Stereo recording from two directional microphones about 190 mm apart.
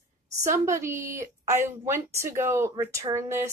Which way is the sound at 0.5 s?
15° right (ahead or behind).